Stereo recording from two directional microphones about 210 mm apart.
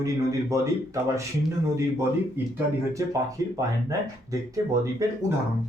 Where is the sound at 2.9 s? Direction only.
15° right (ahead or behind).